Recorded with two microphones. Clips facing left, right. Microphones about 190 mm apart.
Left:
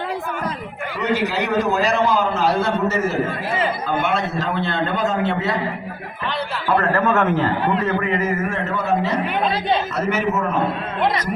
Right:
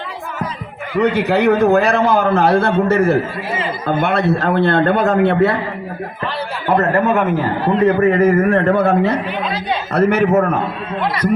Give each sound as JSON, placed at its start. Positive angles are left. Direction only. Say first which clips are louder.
{"t": 0.9, "sound": "a man's voice", "louder": "right 7 dB", "side_deg": -60}
{"t": 6.7, "sound": "a man's voice", "louder": "right 4 dB", "side_deg": -20}
{"t": 7.7, "sound": "a man's voice", "louder": "right 7 dB", "side_deg": -40}